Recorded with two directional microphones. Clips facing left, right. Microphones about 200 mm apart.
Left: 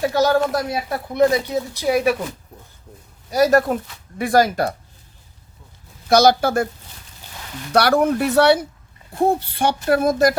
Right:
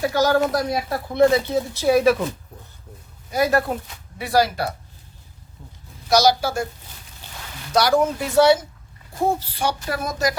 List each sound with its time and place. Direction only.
0.0 s speech: 30° left (ahead or behind)
0.9 s speech: 15° left (ahead or behind)
3.2 s speech: 40° left (ahead or behind)
6.1 s speech: 55° left (ahead or behind)
7.7 s speech: 60° left (ahead or behind)